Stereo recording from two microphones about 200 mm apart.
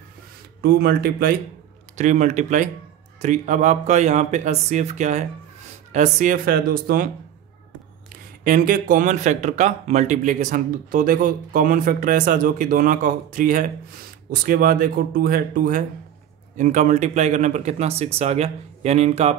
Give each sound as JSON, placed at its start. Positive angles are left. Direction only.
{"t": 0.6, "sound": "speech", "side_deg": -50}
{"t": 2.0, "sound": "speech", "side_deg": -35}
{"t": 8.5, "sound": "speech", "side_deg": -40}